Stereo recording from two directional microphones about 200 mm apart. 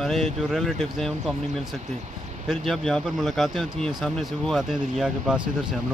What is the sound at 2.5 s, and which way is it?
Speech, centre (ahead or behind).